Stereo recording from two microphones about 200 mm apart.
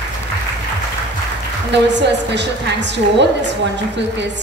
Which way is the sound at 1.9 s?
60° right (ahead or behind).